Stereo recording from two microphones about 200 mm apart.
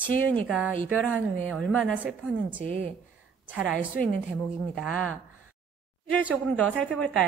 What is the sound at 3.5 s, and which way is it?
Speech, 5° right (ahead or behind).